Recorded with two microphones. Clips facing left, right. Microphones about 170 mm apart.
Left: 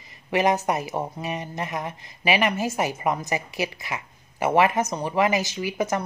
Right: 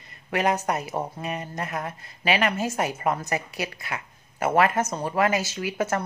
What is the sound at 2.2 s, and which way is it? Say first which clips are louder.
Speech: left 1 dB; 5° left (ahead or behind).